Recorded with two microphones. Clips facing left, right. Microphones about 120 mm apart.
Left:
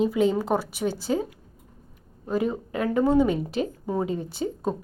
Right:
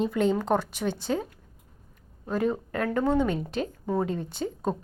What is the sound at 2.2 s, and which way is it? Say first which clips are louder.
A woman's voice: left 1 dB; 5° left (ahead or behind).